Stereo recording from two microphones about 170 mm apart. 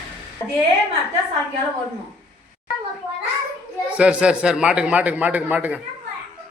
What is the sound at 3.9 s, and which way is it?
A man's voice, 5° right (ahead or behind).